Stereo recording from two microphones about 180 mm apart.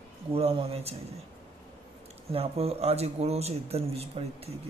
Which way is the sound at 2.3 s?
35° right (ahead or behind).